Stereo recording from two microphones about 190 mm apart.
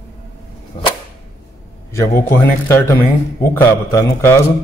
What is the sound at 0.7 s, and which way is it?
Whip, 35° left (ahead or behind).